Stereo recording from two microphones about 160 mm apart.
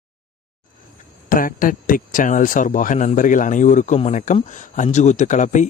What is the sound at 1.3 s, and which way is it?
A man's voice, 60° left (ahead or behind).